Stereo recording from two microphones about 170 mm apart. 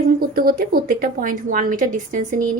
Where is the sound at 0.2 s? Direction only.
60° right (ahead or behind).